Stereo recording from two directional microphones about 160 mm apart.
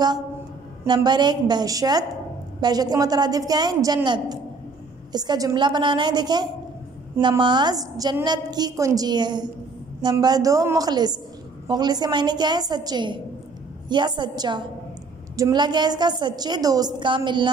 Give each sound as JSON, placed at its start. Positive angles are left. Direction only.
{"t": 0.8, "sound": "a woman's voice", "side_deg": -25}